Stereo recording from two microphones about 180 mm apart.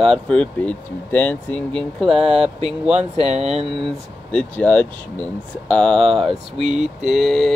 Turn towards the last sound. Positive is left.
turn(degrees=0)  # may be behind; listen again after turning